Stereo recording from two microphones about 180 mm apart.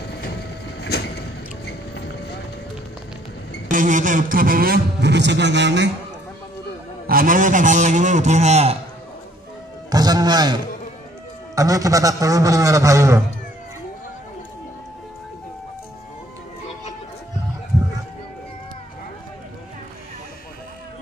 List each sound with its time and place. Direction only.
0.2 s train: 65° left (ahead or behind)
1.7 s a sound: 70° left (ahead or behind)
3.7 s speech: 45° right (ahead or behind); by 5.9 s 75° right (ahead or behind)
7.1 s a man's voice: 50° right (ahead or behind)
9.8 s a man's voice: 20° right (ahead or behind)